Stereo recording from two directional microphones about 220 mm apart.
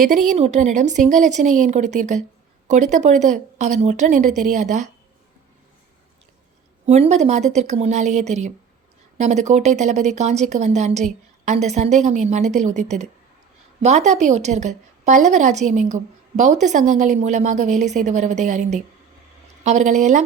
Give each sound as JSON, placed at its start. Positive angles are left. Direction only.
{"t": 0.3, "sound": "a woman's voice", "side_deg": -30}
{"t": 6.8, "sound": "a woman's voice", "side_deg": -30}